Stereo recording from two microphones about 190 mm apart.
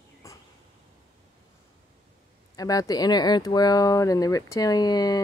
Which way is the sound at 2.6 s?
20° left (ahead or behind).